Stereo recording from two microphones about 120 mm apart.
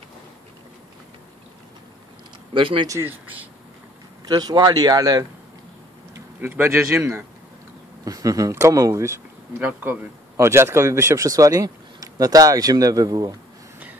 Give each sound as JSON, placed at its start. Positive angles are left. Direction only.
{"t": 2.5, "sound": "speech", "side_deg": -45}
{"t": 2.9, "sound": "speech", "side_deg": -20}
{"t": 4.3, "sound": "speech", "side_deg": -35}
{"t": 6.4, "sound": "a man's voice", "side_deg": -15}